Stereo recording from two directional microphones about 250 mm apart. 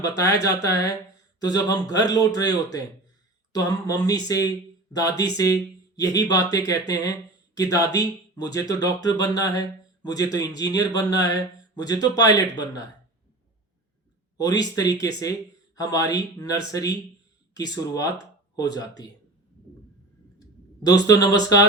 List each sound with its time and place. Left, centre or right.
0.0 s speech: centre
14.3 s speech: centre
20.8 s speech: centre